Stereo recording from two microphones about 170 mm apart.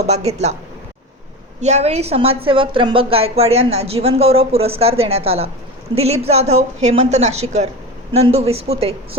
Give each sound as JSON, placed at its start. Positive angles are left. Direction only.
{"t": 0.0, "sound": "a woman's voice", "side_deg": -40}
{"t": 1.6, "sound": "a woman's voice", "side_deg": -40}